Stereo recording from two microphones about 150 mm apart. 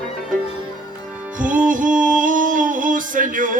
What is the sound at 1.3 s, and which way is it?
Music, 60° right (ahead or behind).